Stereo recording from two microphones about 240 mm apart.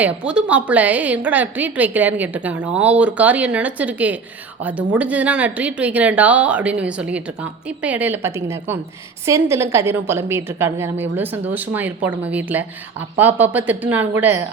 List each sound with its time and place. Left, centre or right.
0.0 s a woman's voice: centre